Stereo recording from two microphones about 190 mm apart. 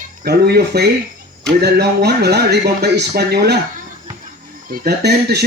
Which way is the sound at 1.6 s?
60° right (ahead or behind).